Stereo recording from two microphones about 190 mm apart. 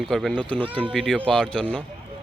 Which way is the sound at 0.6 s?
30° right (ahead or behind).